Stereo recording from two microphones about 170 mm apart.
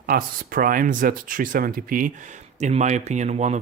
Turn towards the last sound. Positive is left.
turn(degrees=-40)  # may be behind; listen again after turning